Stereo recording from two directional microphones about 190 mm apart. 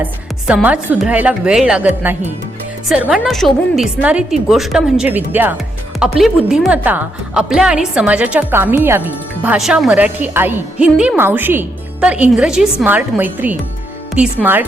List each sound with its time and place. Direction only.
0.0 s a woman's voice: 10° right (ahead or behind)
2.9 s a woman's voice: 5° right (ahead or behind)